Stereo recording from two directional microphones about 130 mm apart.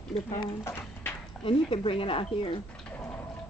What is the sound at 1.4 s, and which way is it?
Speech, 40° left (ahead or behind).